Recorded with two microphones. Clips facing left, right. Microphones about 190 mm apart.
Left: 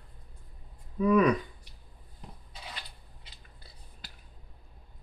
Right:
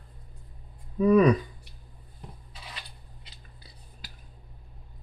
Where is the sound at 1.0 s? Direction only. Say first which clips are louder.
Right 4 dB; 35° right (ahead or behind).